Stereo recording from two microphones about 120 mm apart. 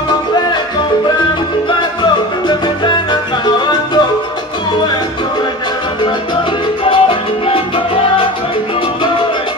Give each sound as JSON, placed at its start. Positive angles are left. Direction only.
{"t": 1.7, "sound": "music", "side_deg": 40}
{"t": 6.8, "sound": "music", "side_deg": 45}